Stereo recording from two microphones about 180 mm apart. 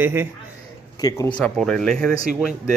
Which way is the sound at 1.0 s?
20° left (ahead or behind).